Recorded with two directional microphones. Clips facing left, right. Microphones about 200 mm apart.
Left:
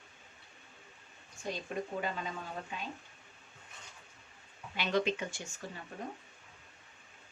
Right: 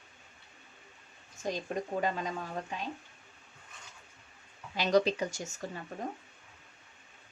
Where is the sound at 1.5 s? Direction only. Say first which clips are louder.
Right 3 dB; 40° right (ahead or behind).